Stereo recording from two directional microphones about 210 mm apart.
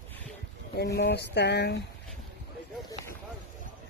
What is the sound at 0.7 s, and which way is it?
Speech, 50° left (ahead or behind).